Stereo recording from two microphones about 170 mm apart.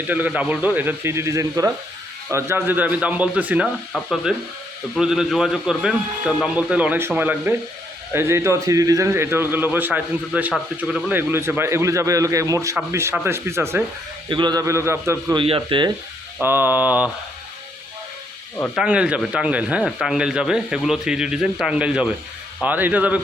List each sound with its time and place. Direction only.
0.1 s a man's voice: 10° right (ahead or behind)
14.3 s a man's voice: 25° right (ahead or behind)
15.4 s a man's voice: 30° right (ahead or behind)
16.4 s a man's voice: 10° right (ahead or behind)
18.5 s speech: 10° left (ahead or behind)
18.8 s a man's voice: 5° right (ahead or behind)